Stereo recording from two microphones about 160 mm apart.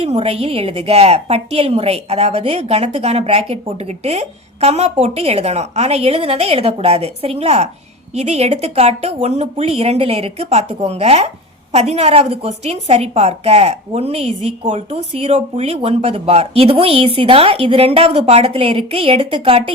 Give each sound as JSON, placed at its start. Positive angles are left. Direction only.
{"t": 0.0, "sound": "a woman's voice", "side_deg": -40}